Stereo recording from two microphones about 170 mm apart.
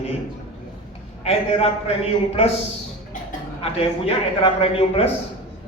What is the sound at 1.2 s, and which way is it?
Speech, 40° left (ahead or behind).